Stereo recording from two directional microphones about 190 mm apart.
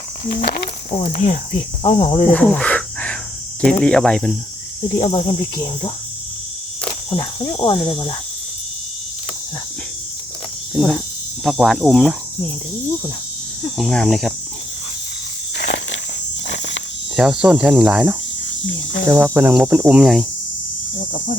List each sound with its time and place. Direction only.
0.9 s speech: 35° left (ahead or behind)
2.3 s cricket: 5° left (ahead or behind)
3.6 s speech: 5° left (ahead or behind)
4.9 s speech: 30° left (ahead or behind)
7.1 s speech: 25° left (ahead or behind)
10.8 s speech: 5° left (ahead or behind)
13.7 s speech: centre (ahead or behind)
17.2 s speech: 5° right (ahead or behind)